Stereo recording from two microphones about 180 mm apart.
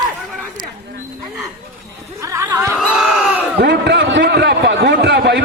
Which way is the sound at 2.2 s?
15° right (ahead or behind).